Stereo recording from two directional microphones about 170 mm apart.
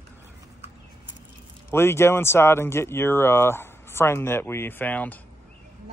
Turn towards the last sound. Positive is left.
turn(degrees=10)  # may be behind; listen again after turning